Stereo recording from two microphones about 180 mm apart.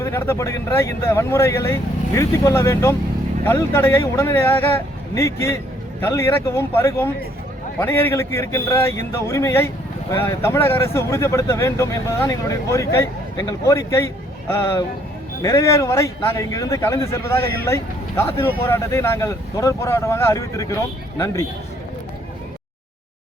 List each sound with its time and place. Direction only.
0.0 s speech: 15° left (ahead or behind)